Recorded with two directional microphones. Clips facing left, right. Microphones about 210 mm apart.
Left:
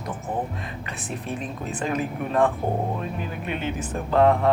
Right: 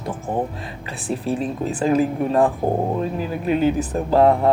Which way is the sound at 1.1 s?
35° right (ahead or behind).